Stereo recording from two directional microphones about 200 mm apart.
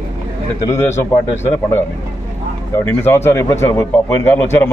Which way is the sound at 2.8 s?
10° left (ahead or behind).